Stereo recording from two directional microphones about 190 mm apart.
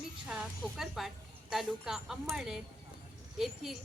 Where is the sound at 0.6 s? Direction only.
Centre (ahead or behind).